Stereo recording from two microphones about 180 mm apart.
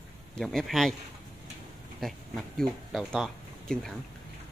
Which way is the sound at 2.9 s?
Centre (ahead or behind).